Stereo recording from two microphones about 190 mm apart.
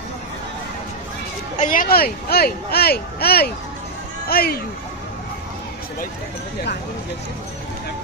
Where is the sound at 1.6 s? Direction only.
45° left (ahead or behind).